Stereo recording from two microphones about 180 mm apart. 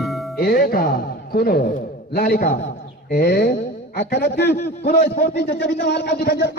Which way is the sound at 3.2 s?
65° left (ahead or behind).